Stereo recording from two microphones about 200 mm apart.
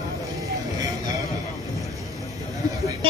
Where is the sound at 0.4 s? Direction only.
15° right (ahead or behind).